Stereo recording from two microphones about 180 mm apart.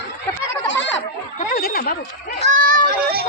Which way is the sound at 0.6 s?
90° left.